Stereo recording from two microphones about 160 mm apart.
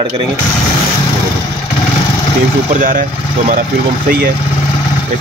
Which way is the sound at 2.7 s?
55° right (ahead or behind).